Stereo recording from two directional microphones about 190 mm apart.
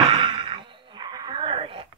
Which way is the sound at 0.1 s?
30° right (ahead or behind).